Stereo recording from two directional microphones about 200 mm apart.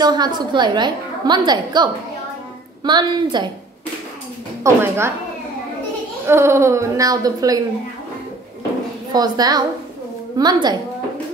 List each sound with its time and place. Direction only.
0.0 s a woman's voice: 20° right (ahead or behind)
4.6 s speech: 15° right (ahead or behind)
6.2 s speech: 10° right (ahead or behind)
9.1 s a woman's voice: 20° right (ahead or behind)